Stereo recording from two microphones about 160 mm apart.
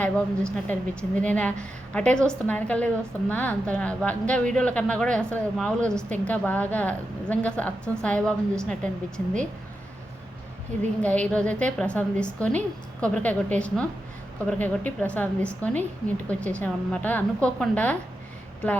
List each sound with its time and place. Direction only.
0.0 s a woman's voice: 5° left (ahead or behind)
11.0 s a woman's voice: 10° left (ahead or behind)